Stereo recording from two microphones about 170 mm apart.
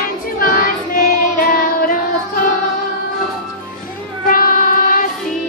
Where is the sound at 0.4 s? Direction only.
55° left (ahead or behind).